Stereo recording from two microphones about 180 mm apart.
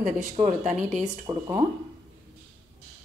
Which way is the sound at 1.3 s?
25° right (ahead or behind).